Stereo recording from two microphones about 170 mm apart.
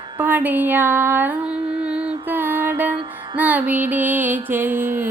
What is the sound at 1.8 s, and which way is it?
Mantra, 5° right (ahead or behind).